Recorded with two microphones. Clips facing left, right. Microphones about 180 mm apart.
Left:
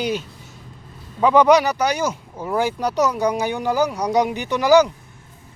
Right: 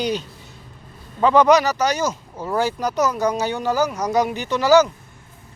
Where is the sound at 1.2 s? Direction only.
10° left (ahead or behind).